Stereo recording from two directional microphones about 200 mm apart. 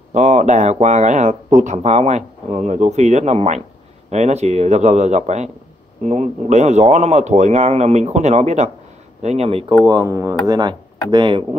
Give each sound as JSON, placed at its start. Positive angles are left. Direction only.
{"t": 0.1, "sound": "speech", "side_deg": -35}
{"t": 9.8, "sound": "speech", "side_deg": -20}